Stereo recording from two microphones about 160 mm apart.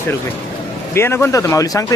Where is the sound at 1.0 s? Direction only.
15° left (ahead or behind).